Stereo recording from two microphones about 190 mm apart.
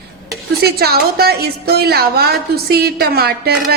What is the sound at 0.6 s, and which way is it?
Speech, 55° right (ahead or behind).